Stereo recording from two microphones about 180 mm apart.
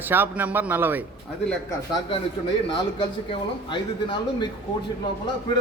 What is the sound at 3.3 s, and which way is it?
Speech, 25° left (ahead or behind).